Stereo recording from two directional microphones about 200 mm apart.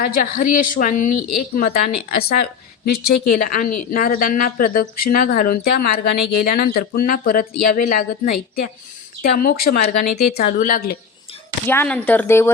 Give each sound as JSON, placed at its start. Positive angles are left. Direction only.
{"t": 0.0, "sound": "a woman's voice", "side_deg": 45}
{"t": 11.6, "sound": "speech", "side_deg": 10}